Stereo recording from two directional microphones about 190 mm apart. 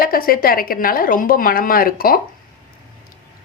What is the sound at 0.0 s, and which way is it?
Speech, 50° left (ahead or behind).